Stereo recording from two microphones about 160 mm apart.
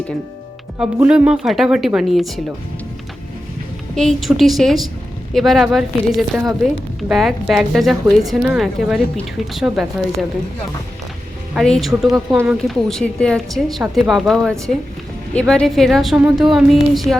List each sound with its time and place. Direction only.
0.8 s speech: 5° right (ahead or behind)
3.9 s speech: centre (ahead or behind)
11.5 s speech: centre (ahead or behind)